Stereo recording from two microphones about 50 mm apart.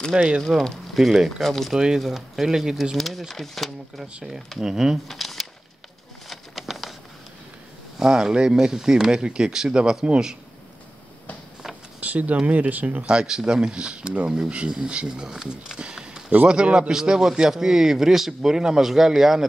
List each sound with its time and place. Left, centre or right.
0.1 s speech: centre
0.6 s speech: centre
1.7 s speech: centre
2.0 s speech: centre
4.6 s speech: centre
5.0 s a sound: centre
6.2 s bird: centre
8.0 s speech: centre
12.0 s speech: right
13.0 s speech: centre
16.9 s speech: centre